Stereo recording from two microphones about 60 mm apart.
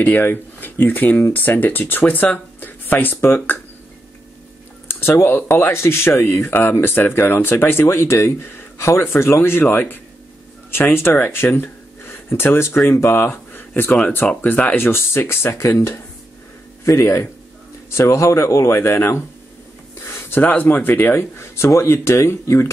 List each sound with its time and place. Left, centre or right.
0.2 s speech: left
4.8 s speech: left
14.8 s speech: left
20.2 s speech: left
21.2 s speech: left